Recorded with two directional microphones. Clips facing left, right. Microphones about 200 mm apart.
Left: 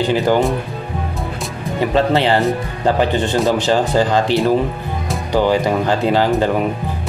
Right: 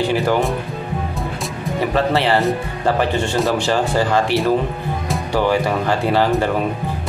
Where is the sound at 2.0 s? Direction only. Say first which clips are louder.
Left 2 dB; 20° left (ahead or behind).